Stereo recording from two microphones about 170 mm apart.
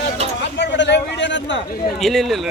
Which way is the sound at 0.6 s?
90° left.